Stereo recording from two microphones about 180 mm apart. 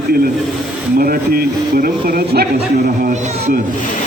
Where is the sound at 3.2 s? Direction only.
40° right (ahead or behind).